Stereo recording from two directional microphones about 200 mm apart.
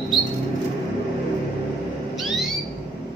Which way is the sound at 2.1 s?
Centre (ahead or behind).